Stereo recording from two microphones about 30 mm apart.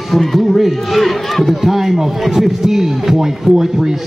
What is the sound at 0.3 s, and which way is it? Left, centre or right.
A man's voice, centre.